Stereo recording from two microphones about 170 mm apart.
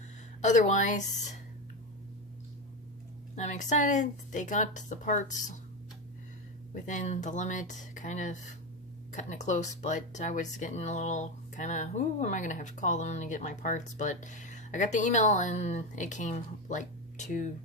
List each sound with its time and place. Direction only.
0.4 s speech: 45° left (ahead or behind)
3.3 s speech: 45° left (ahead or behind)
6.8 s speech: 45° left (ahead or behind)